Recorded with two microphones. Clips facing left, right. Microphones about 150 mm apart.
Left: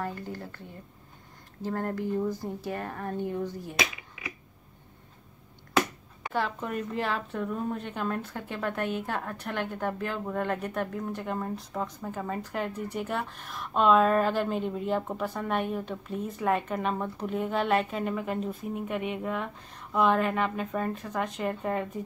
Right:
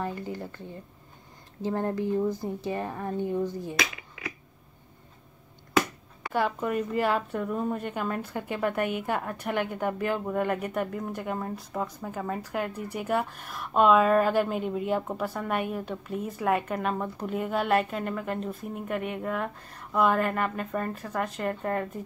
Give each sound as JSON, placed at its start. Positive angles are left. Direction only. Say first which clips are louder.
{"t": 0.0, "sound": "speech", "louder": "right 2 dB", "side_deg": -15}
{"t": 1.6, "sound": "speech", "louder": "right 3 dB", "side_deg": -15}
{"t": 6.3, "sound": "a woman's voice", "louder": "right 4 dB", "side_deg": -5}